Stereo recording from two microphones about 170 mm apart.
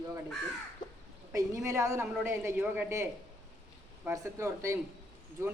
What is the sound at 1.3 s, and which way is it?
Speech, 20° right (ahead or behind).